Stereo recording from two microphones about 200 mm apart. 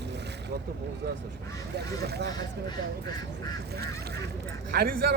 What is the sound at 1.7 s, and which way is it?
Speech, 55° right (ahead or behind).